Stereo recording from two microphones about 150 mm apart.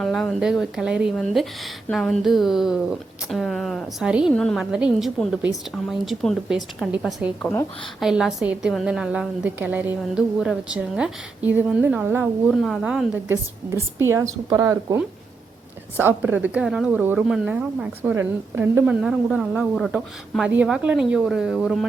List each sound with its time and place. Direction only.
0.0 s a woman's voice: 5° left (ahead or behind)
13.3 s a woman's voice: 20° right (ahead or behind); by 21.8 s centre (ahead or behind)